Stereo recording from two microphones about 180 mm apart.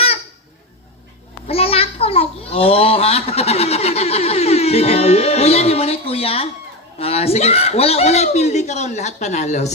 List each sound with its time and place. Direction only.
1.5 s a child's voice: 35° left (ahead or behind)